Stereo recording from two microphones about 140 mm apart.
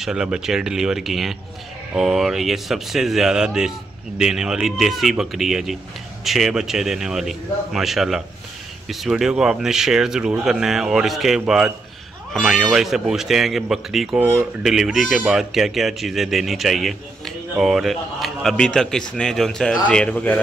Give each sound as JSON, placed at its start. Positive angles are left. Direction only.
{"t": 0.0, "sound": "speech", "side_deg": -5}
{"t": 14.2, "sound": "speech", "side_deg": -20}
{"t": 14.6, "sound": "speech", "side_deg": -5}